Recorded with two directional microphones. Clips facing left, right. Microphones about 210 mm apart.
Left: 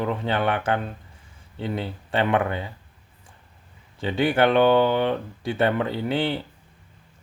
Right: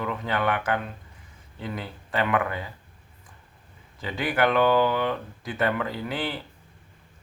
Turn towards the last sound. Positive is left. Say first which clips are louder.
# left 6 dB
turn(degrees=25)  # may be behind; listen again after turning